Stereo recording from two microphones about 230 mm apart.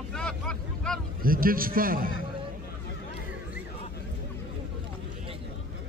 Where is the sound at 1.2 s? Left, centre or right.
Right.